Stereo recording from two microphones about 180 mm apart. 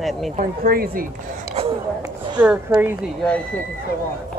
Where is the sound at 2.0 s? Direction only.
10° right (ahead or behind).